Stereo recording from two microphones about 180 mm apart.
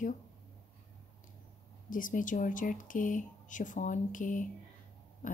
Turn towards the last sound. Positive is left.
turn(degrees=45)  # may be behind; listen again after turning